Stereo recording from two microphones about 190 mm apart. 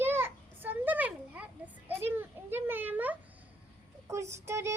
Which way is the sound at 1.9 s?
10° right (ahead or behind).